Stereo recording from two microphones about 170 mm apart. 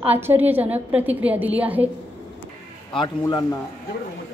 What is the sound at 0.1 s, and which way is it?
A woman's voice, 10° right (ahead or behind).